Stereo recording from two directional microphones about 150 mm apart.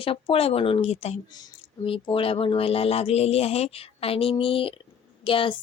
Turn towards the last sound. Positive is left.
turn(degrees=35)  # may be behind; listen again after turning